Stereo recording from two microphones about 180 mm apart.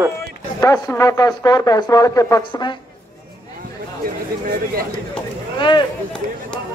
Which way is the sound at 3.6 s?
55° right (ahead or behind).